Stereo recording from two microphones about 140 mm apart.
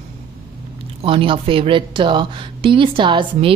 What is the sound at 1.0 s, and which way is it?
A woman's voice, 40° right (ahead or behind).